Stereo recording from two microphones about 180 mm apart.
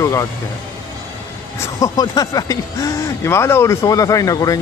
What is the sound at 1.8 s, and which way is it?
Speech, 20° left (ahead or behind).